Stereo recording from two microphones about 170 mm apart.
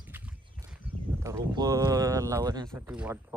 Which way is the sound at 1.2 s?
20° right (ahead or behind).